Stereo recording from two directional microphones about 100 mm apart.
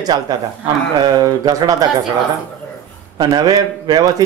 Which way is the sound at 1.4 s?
40° right (ahead or behind).